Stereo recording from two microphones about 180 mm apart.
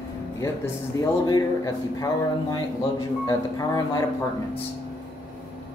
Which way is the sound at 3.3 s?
20° left (ahead or behind).